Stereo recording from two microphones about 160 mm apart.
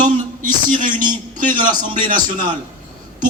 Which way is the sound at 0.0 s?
55° right (ahead or behind).